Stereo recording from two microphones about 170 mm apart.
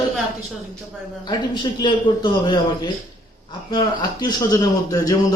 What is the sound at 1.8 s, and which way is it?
Speech, 25° left (ahead or behind).